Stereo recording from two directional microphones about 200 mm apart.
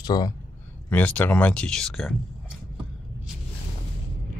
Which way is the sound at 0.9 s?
10° left (ahead or behind).